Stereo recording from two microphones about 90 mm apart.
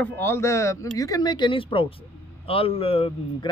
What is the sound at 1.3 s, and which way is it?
Speech, 70° left (ahead or behind).